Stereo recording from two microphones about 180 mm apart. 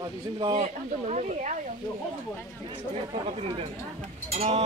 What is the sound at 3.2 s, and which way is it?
Speech, 30° right (ahead or behind).